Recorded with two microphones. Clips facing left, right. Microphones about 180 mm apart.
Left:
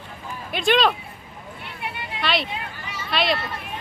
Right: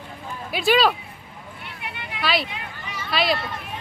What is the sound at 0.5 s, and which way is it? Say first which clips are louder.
Speech: right 1 dB; 5° right (ahead or behind).